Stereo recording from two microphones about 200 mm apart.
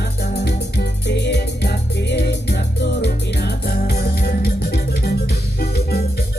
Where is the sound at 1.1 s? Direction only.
60° left (ahead or behind).